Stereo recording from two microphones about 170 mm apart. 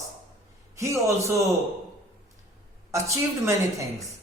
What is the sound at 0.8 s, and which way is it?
Speech, 20° right (ahead or behind).